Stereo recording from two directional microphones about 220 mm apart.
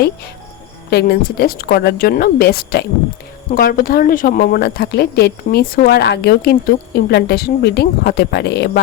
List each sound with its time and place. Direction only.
0.9 s a woman's voice: 45° left (ahead or behind)